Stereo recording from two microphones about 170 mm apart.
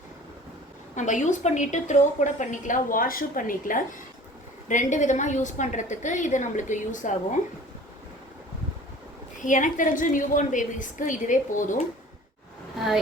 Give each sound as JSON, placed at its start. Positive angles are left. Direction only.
{"t": 0.9, "sound": "a woman's voice", "side_deg": 45}
{"t": 9.4, "sound": "a woman's voice", "side_deg": 50}